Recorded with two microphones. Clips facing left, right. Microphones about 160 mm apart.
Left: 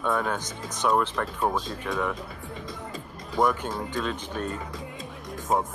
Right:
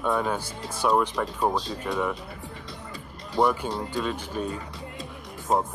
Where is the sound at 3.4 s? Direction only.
5° right (ahead or behind).